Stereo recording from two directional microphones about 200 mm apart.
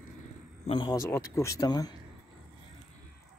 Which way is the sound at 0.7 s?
25° left (ahead or behind).